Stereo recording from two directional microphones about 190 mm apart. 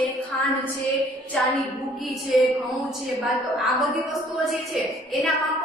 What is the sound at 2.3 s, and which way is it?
Speech, centre (ahead or behind).